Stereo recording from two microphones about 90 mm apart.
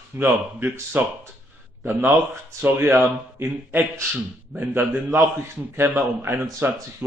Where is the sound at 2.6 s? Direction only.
25° right (ahead or behind).